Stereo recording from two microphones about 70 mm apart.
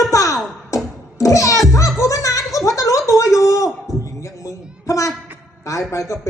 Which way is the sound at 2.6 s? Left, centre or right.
Left.